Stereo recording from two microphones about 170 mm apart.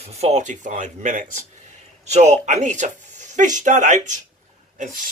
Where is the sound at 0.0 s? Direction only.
40° right (ahead or behind).